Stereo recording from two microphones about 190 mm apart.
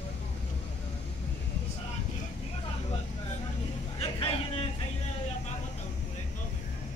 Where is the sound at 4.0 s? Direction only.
30° left (ahead or behind).